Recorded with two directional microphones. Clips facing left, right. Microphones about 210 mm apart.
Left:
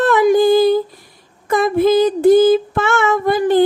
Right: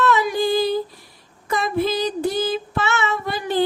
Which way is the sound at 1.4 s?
50° left (ahead or behind).